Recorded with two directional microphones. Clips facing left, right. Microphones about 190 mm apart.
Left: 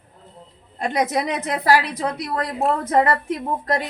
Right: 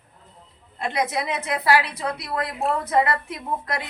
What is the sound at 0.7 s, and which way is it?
A woman's voice, 45° left (ahead or behind).